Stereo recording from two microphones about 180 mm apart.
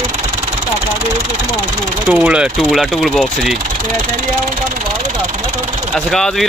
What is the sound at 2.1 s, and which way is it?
Speech, 10° right (ahead or behind).